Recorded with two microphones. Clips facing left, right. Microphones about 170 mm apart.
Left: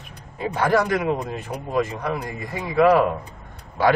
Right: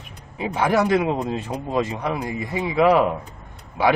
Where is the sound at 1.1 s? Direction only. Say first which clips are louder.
Right 1 dB; 25° right (ahead or behind).